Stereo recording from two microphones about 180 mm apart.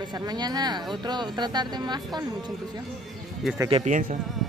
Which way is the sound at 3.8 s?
45° right (ahead or behind).